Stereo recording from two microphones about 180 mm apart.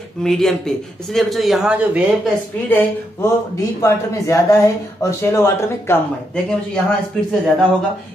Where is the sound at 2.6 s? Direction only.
10° left (ahead or behind).